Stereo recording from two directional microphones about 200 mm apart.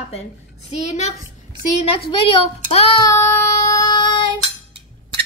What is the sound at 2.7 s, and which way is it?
Speech, 30° left (ahead or behind).